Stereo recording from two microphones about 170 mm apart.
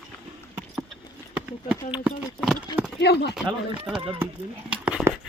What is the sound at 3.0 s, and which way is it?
Speech, 75° left (ahead or behind).